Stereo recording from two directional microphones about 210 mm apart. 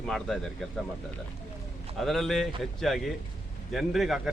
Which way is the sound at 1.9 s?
Centre (ahead or behind).